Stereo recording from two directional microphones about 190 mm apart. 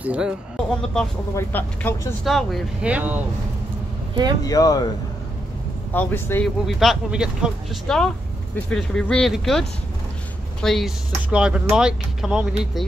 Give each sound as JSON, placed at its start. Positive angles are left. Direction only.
{"t": 0.0, "sound": "speech", "side_deg": -5}
{"t": 1.3, "sound": "speech", "side_deg": 10}
{"t": 4.1, "sound": "speech", "side_deg": -20}
{"t": 4.5, "sound": "speech", "side_deg": 20}
{"t": 5.9, "sound": "speech", "side_deg": 10}
{"t": 6.6, "sound": "speech", "side_deg": 0}